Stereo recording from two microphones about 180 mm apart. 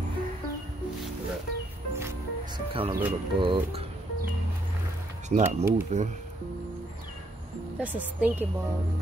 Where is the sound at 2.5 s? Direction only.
30° right (ahead or behind).